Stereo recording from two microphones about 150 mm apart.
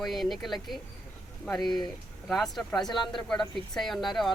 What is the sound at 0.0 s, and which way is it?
Speech, centre (ahead or behind).